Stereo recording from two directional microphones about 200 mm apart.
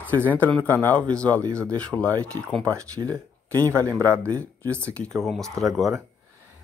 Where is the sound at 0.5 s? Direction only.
5° left (ahead or behind).